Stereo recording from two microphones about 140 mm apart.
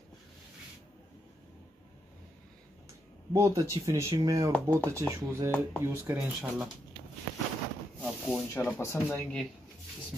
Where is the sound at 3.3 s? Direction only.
25° right (ahead or behind).